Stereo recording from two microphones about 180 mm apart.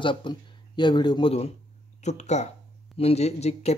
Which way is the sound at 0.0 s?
25° left (ahead or behind).